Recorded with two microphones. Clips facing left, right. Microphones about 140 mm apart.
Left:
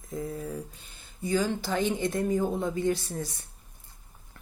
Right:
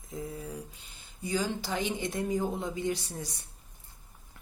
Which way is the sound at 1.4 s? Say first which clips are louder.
Left 4 dB; 15° right (ahead or behind).